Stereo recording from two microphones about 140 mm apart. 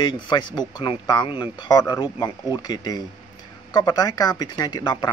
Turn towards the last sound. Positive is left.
turn(degrees=30)  # may be behind; listen again after turning